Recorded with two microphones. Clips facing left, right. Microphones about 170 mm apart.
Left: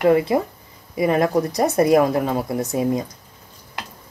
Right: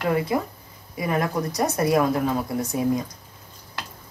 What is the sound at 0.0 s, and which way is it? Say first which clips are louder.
A woman's voice: left 7 dB; 25° left (ahead or behind).